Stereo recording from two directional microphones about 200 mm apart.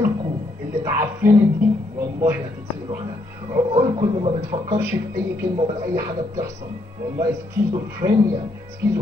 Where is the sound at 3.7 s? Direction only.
25° right (ahead or behind).